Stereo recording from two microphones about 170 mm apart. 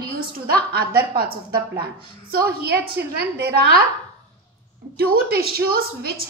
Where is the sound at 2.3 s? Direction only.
70° right (ahead or behind).